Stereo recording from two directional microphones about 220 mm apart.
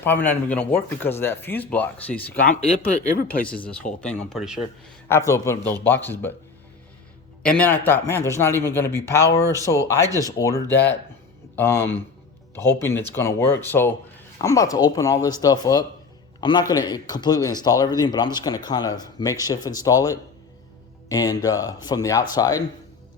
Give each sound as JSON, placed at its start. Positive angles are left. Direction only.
{"t": 0.0, "sound": "speech", "side_deg": 10}
{"t": 2.4, "sound": "speech", "side_deg": 35}
{"t": 3.6, "sound": "speech", "side_deg": 5}
{"t": 5.0, "sound": "speech", "side_deg": 10}
{"t": 7.4, "sound": "speech", "side_deg": 5}